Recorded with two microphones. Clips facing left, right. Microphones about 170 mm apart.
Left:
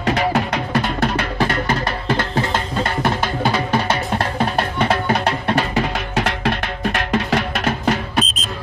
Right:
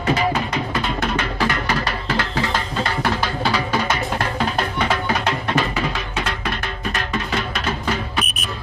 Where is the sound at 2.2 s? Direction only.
25° left (ahead or behind).